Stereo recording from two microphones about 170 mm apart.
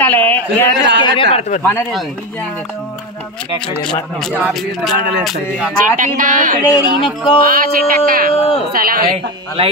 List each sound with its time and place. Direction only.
0.0 s a man's voice: 10° left (ahead or behind)
1.0 s speech: 30° left (ahead or behind)
1.6 s a man's voice: 10° left (ahead or behind)
3.8 s speech: 5° left (ahead or behind)
5.8 s speech: 50° right (ahead or behind)
6.6 s speech: 20° left (ahead or behind)
7.4 s speech: 55° right (ahead or behind)
9.6 s speech: 35° right (ahead or behind)